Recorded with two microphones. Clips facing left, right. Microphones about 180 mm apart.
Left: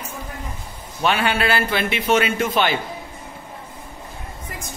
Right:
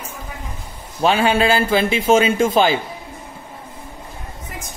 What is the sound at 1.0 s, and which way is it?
A man's voice, 30° right (ahead or behind).